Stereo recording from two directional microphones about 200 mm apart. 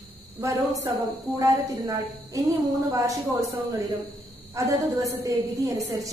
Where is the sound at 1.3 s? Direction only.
15° right (ahead or behind).